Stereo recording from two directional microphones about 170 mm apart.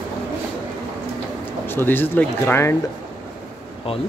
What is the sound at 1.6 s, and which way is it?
Speech, 10° left (ahead or behind).